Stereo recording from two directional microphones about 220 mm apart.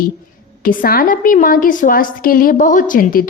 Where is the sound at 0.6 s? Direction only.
40° left (ahead or behind).